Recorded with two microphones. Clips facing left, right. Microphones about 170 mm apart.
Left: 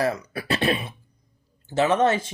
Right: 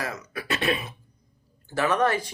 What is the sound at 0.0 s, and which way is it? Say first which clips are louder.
Speech: left 8 dB; 30° left (ahead or behind).